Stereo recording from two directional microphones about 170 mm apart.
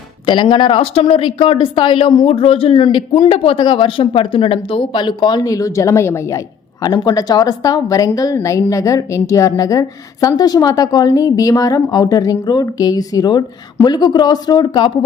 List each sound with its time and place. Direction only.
0.3 s a woman's voice: 30° left (ahead or behind)